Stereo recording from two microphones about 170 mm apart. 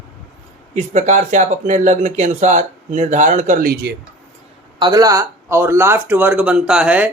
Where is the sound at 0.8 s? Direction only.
45° right (ahead or behind).